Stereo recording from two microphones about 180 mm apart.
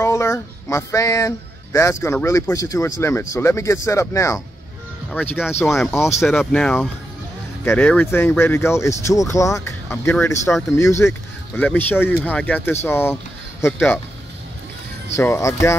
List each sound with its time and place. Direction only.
0.0 s speech: 15° left (ahead or behind)
15.1 s speech: 15° left (ahead or behind)